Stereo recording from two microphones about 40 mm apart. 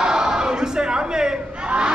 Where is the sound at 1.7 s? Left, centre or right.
Right.